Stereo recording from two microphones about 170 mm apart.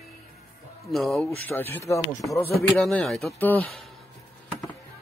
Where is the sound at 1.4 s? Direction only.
10° left (ahead or behind).